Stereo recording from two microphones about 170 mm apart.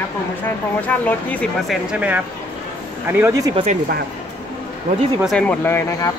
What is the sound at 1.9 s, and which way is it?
Speech, 10° right (ahead or behind).